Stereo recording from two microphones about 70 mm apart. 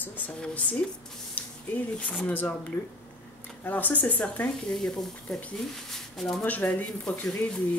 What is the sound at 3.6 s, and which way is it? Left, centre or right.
Speech, left.